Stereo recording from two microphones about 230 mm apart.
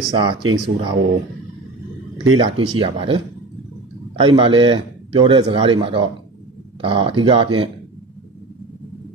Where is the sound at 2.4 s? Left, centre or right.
Right.